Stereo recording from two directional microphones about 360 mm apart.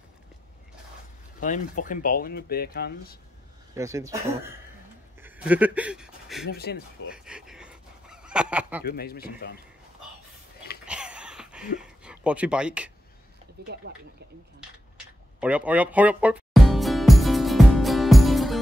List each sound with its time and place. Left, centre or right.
1.4 s speech: left
3.7 s speech: centre
6.5 s speech: left
7.1 s fowl: centre
8.8 s speech: left
10.9 s a sound: centre
11.8 s speech: centre
15.4 s music: centre